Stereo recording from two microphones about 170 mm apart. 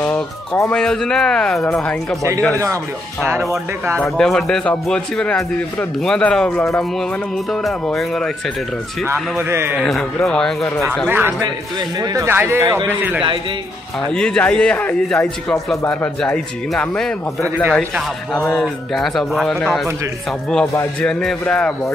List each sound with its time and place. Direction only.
0.0 s a man's voice: 10° left (ahead or behind)
4.0 s a man's voice: 5° left (ahead or behind)
9.4 s speech: 15° right (ahead or behind)
9.8 s a man's voice: centre (ahead or behind)
11.1 s speech: 10° right (ahead or behind)
14.1 s a man's voice: 5° left (ahead or behind)
21.0 s a man's voice: 5° left (ahead or behind)